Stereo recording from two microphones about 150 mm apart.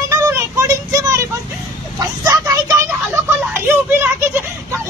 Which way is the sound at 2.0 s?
25° right (ahead or behind).